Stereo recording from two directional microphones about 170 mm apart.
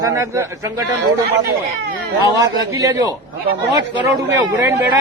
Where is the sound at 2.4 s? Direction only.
20° right (ahead or behind).